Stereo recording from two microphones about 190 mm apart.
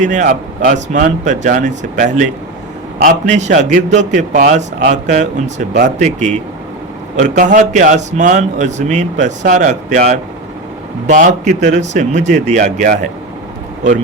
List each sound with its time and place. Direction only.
0.0 s a man's voice: 40° right (ahead or behind)